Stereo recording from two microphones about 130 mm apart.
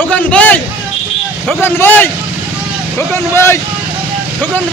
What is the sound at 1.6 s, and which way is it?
Speech, 15° left (ahead or behind).